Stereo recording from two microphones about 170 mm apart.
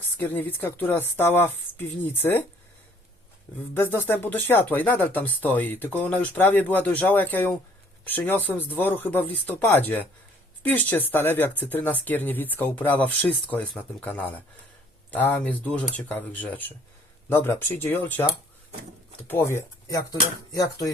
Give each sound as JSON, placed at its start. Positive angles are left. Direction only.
{"t": 0.2, "sound": "speech", "side_deg": 10}
{"t": 3.8, "sound": "speech", "side_deg": 15}